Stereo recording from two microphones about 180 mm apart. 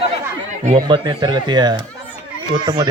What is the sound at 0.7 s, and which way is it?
Speech, 25° right (ahead or behind).